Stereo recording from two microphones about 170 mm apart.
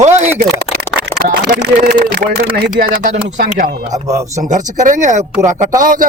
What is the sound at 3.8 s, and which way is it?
Speech, 40° right (ahead or behind).